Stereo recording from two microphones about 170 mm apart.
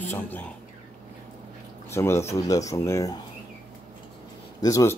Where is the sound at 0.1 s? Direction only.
10° left (ahead or behind).